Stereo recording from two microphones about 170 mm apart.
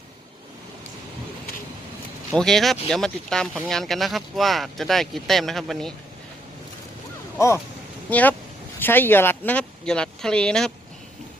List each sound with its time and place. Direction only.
2.3 s speech: 5° left (ahead or behind)
7.3 s speech: 15° left (ahead or behind)